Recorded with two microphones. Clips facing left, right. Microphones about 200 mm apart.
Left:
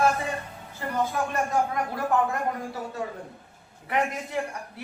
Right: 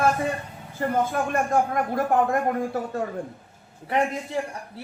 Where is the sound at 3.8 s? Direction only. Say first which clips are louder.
Right 3 dB; 30° right (ahead or behind).